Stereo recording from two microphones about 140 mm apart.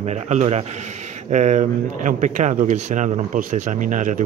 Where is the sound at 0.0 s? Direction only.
55° right (ahead or behind).